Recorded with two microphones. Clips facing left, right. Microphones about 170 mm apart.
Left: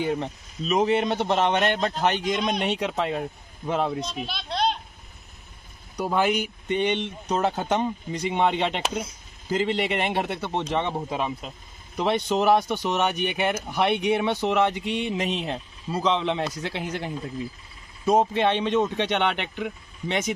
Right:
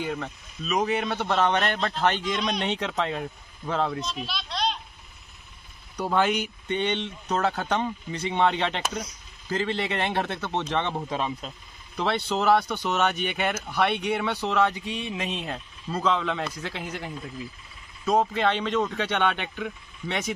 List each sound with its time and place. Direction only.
0.0 s speech: 25° left (ahead or behind)
4.3 s a sound: 50° left (ahead or behind)
5.9 s speech: 10° left (ahead or behind)